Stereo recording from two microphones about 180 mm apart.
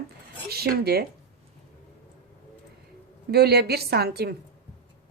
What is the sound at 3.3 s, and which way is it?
A woman's voice, 60° right (ahead or behind).